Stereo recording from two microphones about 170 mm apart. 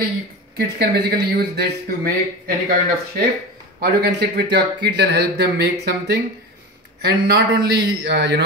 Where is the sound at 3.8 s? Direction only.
80° right.